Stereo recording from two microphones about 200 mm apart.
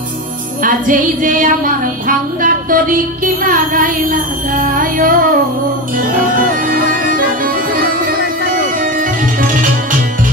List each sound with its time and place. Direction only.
0.7 s female singing: 40° right (ahead or behind)
6.2 s music: 45° right (ahead or behind)